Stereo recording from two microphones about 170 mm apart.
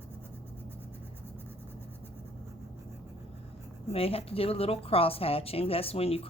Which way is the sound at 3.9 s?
35° left (ahead or behind).